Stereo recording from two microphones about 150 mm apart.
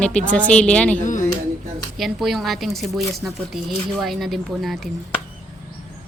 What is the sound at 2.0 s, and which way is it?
Speech, centre (ahead or behind).